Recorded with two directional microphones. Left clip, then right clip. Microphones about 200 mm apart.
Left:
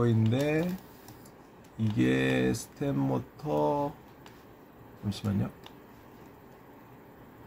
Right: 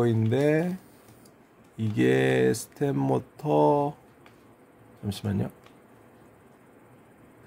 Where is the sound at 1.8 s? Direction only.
55° right (ahead or behind).